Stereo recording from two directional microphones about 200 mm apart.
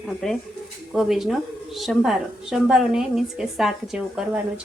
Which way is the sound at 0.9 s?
Centre (ahead or behind).